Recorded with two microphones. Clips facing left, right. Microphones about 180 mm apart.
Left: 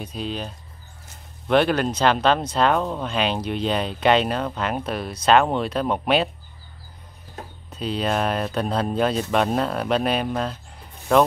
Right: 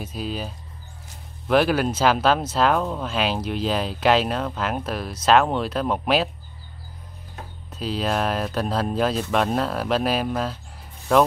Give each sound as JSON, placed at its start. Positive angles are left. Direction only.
{"t": 0.0, "sound": "speech", "side_deg": -5}
{"t": 1.5, "sound": "speech", "side_deg": -5}
{"t": 7.7, "sound": "speech", "side_deg": 0}